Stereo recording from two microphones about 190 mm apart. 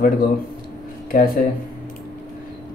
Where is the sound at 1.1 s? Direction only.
50° left (ahead or behind).